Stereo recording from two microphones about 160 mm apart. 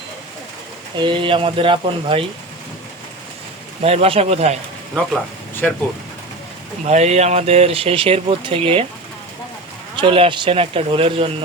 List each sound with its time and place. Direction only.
0.9 s speech: 30° right (ahead or behind)
3.8 s speech: 40° right (ahead or behind)
5.6 s speech: 5° left (ahead or behind)
6.8 s speech: 45° right (ahead or behind)
9.9 s speech: 30° right (ahead or behind)